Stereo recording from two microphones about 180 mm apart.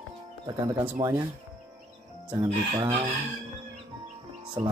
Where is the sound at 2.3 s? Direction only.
20° right (ahead or behind).